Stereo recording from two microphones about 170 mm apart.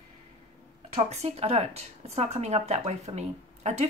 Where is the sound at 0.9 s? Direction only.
40° right (ahead or behind).